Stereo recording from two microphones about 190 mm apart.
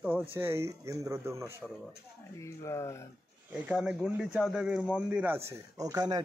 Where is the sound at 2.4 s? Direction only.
15° left (ahead or behind).